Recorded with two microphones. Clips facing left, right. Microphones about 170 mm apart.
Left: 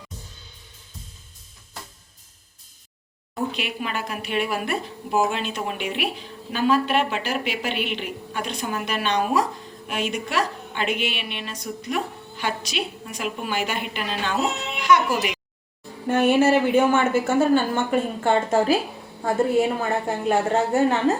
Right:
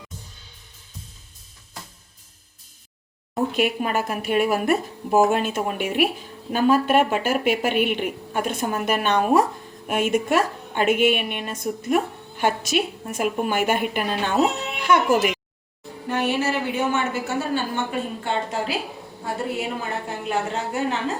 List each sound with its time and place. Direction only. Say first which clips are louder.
3.3 s speech: right 6 dB; 45° right (ahead or behind)
16.0 s a woman's voice: left 6 dB; 50° left (ahead or behind)
20.2 s a woman's voice: left 5 dB; 45° left (ahead or behind)